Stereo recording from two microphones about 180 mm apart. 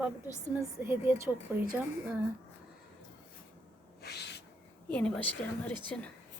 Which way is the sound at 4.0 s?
65° left (ahead or behind).